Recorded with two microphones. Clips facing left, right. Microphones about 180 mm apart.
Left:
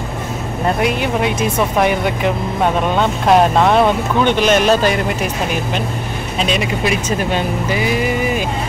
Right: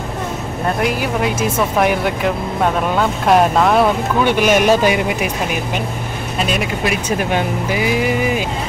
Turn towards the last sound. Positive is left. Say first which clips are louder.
# even
turn(degrees=-10)  # may be behind; listen again after turning